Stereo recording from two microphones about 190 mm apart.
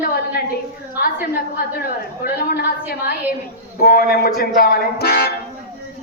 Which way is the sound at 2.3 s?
55° left (ahead or behind).